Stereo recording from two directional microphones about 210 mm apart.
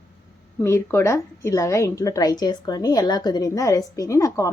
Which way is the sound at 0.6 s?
10° left (ahead or behind).